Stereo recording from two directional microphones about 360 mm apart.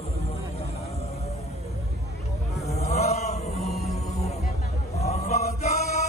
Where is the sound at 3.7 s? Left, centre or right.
Centre.